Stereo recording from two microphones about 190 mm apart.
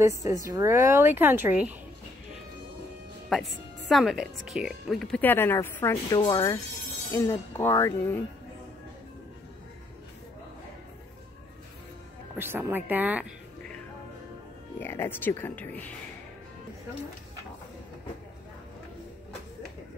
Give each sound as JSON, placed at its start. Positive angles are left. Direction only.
{"t": 0.5, "sound": "speech", "side_deg": -15}
{"t": 3.3, "sound": "speech", "side_deg": 0}
{"t": 12.4, "sound": "speech", "side_deg": -10}
{"t": 14.8, "sound": "speech", "side_deg": 10}